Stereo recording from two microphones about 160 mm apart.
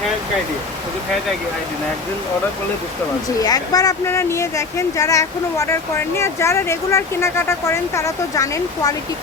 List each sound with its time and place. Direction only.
3.3 s speech: 25° left (ahead or behind)